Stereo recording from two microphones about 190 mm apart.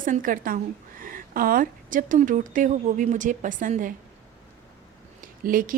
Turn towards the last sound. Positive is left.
turn(degrees=-45)  # may be behind; listen again after turning